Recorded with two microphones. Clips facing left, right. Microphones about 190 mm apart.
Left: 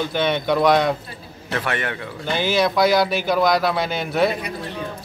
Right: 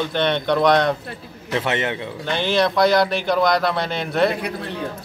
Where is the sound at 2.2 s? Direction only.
5° left (ahead or behind).